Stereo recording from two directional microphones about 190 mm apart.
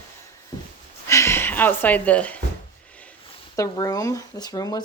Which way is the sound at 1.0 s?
15° left (ahead or behind).